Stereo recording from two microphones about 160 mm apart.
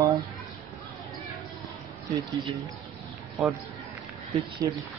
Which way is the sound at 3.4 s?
Centre (ahead or behind).